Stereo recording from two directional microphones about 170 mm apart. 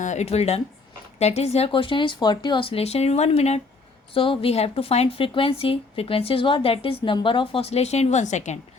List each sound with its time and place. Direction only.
0.0 s a woman's voice: 45° left (ahead or behind)